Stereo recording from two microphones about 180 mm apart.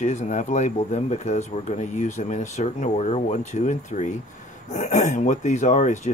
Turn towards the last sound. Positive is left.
turn(degrees=40)  # may be behind; listen again after turning